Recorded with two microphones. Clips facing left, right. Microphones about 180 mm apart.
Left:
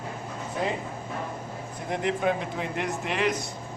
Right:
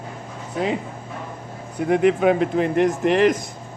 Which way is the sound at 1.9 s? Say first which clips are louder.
Right 9 dB; 65° right (ahead or behind).